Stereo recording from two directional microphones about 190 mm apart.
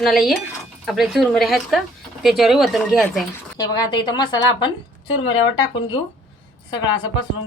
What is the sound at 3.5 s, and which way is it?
A woman's voice, 20° left (ahead or behind).